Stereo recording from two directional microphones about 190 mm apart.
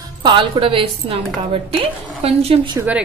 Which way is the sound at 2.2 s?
30° right (ahead or behind).